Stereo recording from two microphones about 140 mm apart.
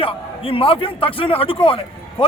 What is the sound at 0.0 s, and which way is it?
A man's voice, 40° left (ahead or behind).